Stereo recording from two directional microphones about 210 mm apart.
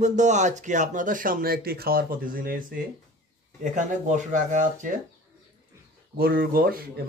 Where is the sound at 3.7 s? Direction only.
35° right (ahead or behind).